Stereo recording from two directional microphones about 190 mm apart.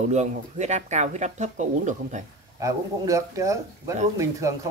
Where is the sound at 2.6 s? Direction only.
15° right (ahead or behind).